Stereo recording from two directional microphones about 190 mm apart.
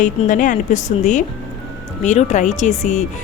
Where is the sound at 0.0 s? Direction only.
45° left (ahead or behind).